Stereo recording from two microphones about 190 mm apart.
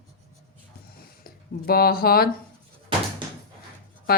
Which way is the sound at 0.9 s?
50° left (ahead or behind).